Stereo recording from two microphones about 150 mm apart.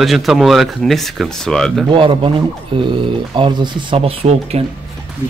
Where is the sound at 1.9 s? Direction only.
35° right (ahead or behind).